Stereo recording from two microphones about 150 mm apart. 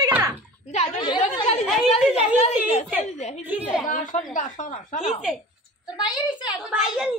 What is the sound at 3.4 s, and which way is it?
Speech, 10° right (ahead or behind).